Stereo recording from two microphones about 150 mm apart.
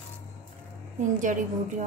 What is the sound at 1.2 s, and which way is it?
Speech, 60° right (ahead or behind).